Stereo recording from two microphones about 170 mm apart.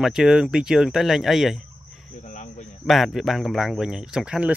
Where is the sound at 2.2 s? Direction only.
45° left (ahead or behind).